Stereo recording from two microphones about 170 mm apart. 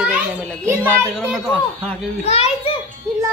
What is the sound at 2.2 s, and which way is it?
Children playing, 35° left (ahead or behind).